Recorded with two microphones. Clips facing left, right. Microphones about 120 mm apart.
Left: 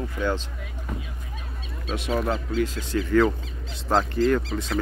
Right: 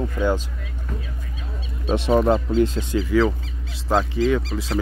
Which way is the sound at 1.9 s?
30° right (ahead or behind).